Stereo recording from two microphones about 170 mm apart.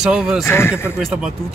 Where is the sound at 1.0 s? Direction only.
Centre (ahead or behind).